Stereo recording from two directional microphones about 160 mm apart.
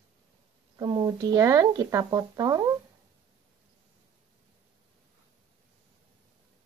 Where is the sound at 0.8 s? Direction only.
25° right (ahead or behind).